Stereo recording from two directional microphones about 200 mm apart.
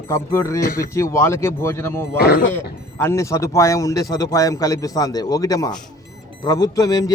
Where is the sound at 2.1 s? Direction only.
50° left (ahead or behind).